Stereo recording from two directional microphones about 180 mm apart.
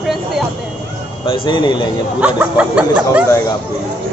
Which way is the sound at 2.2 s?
5° right (ahead or behind).